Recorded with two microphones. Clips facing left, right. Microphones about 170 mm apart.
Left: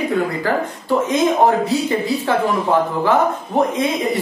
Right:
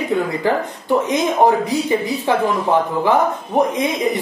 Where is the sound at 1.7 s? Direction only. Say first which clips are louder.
Even; 15° right (ahead or behind).